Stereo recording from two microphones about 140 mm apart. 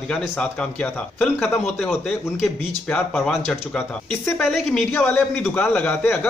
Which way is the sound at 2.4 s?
Centre (ahead or behind).